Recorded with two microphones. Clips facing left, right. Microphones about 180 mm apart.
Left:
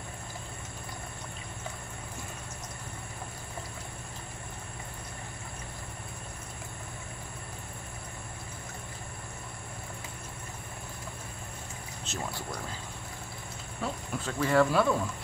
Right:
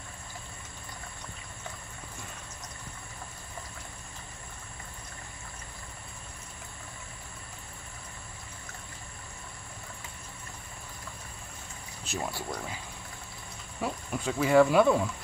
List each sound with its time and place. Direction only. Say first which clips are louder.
12.0 s speech: right 3 dB; 10° right (ahead or behind)
13.7 s speech: right 2 dB; 10° right (ahead or behind)